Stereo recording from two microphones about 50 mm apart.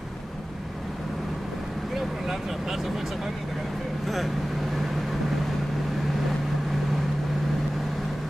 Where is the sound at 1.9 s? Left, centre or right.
Centre.